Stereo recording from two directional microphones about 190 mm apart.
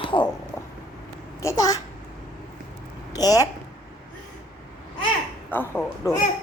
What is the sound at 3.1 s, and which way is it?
Speech, 20° left (ahead or behind).